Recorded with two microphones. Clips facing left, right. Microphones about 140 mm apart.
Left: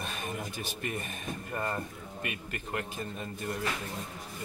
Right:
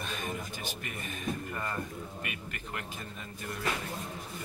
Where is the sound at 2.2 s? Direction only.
30° left (ahead or behind).